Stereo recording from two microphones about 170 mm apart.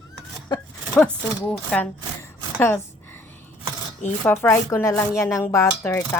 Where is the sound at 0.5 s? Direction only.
25° left (ahead or behind).